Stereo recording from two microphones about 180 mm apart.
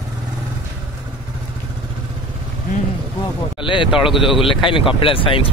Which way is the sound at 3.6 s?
25° left (ahead or behind).